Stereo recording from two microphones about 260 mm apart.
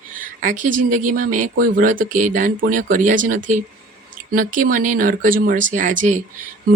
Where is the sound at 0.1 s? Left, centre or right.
Right.